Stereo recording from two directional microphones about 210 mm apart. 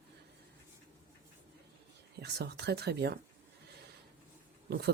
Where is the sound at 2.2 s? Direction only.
50° right (ahead or behind).